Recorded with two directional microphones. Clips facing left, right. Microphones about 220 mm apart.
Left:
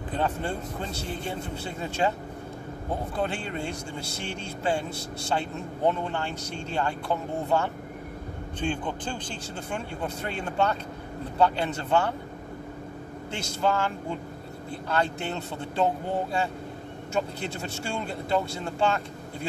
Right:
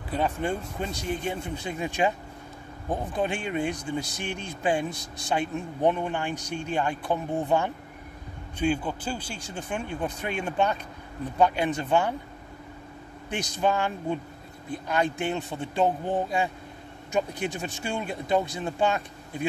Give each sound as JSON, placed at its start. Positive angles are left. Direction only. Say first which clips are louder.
{"t": 0.1, "sound": "a man's voice", "louder": "right 2 dB", "side_deg": -10}
{"t": 13.3, "sound": "a man's voice", "louder": "right 1 dB", "side_deg": -15}